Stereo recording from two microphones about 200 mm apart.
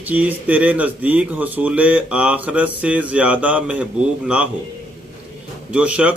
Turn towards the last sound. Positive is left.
turn(degrees=-5)  # may be behind; listen again after turning